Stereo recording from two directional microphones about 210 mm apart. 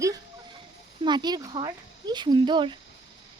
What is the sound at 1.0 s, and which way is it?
Speech, 20° right (ahead or behind).